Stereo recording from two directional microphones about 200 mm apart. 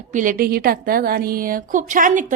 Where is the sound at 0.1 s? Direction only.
40° right (ahead or behind).